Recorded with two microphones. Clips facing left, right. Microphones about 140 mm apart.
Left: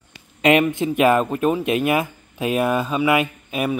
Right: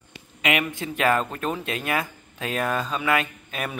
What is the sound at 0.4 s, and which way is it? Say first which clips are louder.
Speech: left 9 dB; 35° left (ahead or behind).